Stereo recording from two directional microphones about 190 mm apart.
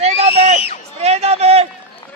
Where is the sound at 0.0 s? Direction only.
35° right (ahead or behind).